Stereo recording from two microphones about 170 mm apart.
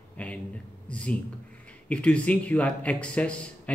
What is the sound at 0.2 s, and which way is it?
A man's voice, 10° left (ahead or behind).